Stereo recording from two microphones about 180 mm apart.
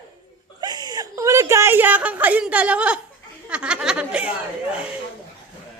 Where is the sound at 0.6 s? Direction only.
25° right (ahead or behind); by 4.4 s 5° right (ahead or behind).